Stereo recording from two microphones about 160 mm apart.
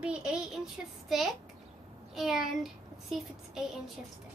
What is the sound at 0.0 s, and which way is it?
Speech, 5° right (ahead or behind).